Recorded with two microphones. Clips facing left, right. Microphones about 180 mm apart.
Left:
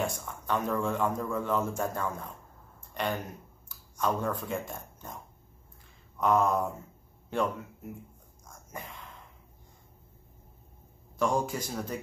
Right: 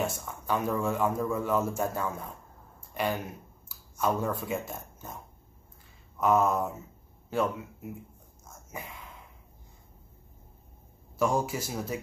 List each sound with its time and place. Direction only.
0.0 s a man's voice: 5° right (ahead or behind)
2.9 s a sound: 5° right (ahead or behind)
3.6 s speech: 5° right (ahead or behind)
8.5 s dog: 10° right (ahead or behind)
11.1 s a man's voice: 10° right (ahead or behind)